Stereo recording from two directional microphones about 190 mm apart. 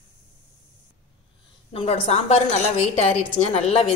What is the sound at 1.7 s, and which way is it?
Speech, 35° left (ahead or behind).